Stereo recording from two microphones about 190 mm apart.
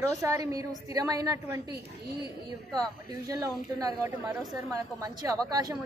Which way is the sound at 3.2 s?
20° right (ahead or behind).